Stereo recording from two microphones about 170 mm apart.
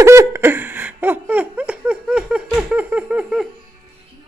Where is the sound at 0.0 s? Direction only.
15° right (ahead or behind).